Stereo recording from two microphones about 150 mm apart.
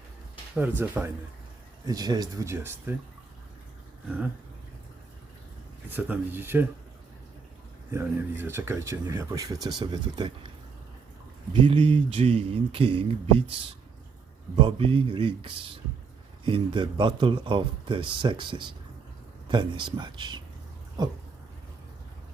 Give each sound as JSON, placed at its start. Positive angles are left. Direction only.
{"t": 0.5, "sound": "speech", "side_deg": -10}
{"t": 1.9, "sound": "speech", "side_deg": -25}
{"t": 5.9, "sound": "speech", "side_deg": -10}
{"t": 7.9, "sound": "speech", "side_deg": -15}
{"t": 11.5, "sound": "speech", "side_deg": -35}